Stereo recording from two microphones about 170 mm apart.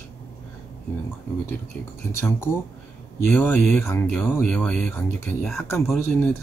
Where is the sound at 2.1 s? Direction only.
15° left (ahead or behind).